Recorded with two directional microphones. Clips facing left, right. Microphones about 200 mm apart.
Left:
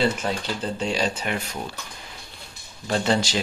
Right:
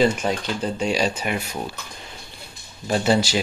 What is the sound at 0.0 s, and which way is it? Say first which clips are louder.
Speech: right 4 dB; 15° right (ahead or behind).